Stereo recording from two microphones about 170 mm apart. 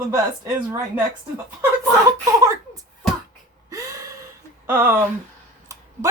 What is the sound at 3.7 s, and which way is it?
Gasp, 20° right (ahead or behind).